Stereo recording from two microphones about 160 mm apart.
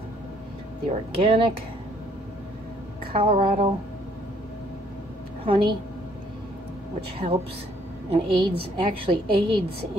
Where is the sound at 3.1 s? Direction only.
35° right (ahead or behind).